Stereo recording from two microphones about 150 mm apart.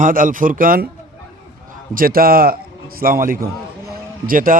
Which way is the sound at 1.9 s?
75° right (ahead or behind).